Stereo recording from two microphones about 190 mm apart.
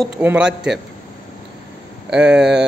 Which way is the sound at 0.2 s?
5° right (ahead or behind).